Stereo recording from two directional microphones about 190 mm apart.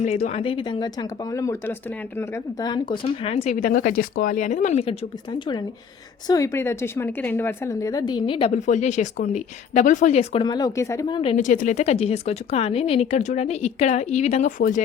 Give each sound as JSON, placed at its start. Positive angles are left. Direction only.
{"t": 0.0, "sound": "speech", "side_deg": 35}
{"t": 10.4, "sound": "speech", "side_deg": 20}
{"t": 11.2, "sound": "speech", "side_deg": 30}
{"t": 11.4, "sound": "speech", "side_deg": 40}